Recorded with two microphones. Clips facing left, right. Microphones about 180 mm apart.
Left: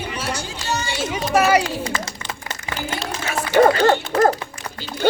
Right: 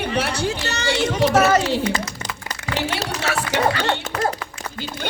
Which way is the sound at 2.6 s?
75° right (ahead or behind).